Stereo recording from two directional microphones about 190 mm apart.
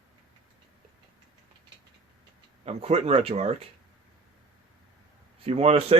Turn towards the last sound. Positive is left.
turn(degrees=-30)  # may be behind; listen again after turning